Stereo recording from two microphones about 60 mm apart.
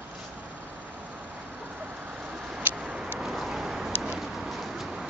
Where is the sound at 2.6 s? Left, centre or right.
Centre.